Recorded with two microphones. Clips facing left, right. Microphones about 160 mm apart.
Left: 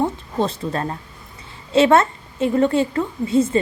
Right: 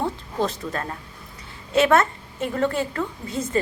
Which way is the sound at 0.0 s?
25° left (ahead or behind).